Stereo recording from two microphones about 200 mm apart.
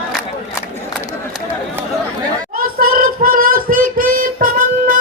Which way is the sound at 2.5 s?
45° right (ahead or behind).